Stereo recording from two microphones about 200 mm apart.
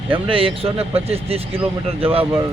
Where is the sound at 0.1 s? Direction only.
25° right (ahead or behind).